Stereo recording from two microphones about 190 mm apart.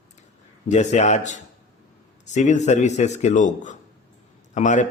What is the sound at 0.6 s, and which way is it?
A man's voice, 35° left (ahead or behind).